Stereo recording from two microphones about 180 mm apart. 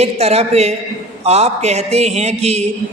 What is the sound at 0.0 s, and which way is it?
A man's voice, 35° right (ahead or behind).